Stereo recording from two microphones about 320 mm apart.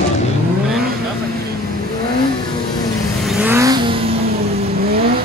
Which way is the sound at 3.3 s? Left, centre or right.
Centre.